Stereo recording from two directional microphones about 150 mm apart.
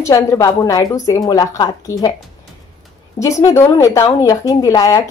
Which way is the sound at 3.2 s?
20° left (ahead or behind).